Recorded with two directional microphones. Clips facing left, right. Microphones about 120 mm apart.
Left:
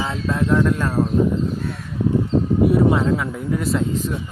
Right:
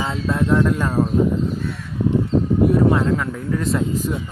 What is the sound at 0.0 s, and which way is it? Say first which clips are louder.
Speech: right 1 dB; centre (ahead or behind).